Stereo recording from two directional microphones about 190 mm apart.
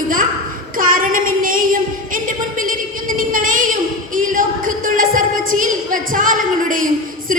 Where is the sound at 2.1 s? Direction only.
45° right (ahead or behind).